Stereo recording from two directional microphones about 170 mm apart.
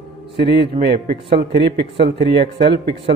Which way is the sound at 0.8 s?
80° right.